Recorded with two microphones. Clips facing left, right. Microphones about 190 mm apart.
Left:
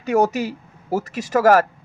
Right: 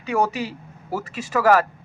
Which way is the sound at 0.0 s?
40° left (ahead or behind).